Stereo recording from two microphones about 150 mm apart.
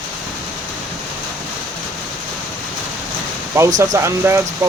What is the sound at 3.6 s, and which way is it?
Speech, 20° right (ahead or behind).